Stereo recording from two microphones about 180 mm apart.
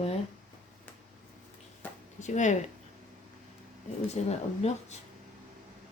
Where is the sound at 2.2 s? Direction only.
40° left (ahead or behind).